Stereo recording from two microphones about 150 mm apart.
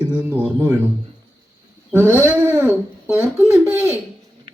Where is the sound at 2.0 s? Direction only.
15° right (ahead or behind).